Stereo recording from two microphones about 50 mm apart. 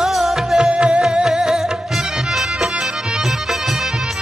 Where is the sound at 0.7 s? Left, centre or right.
Right.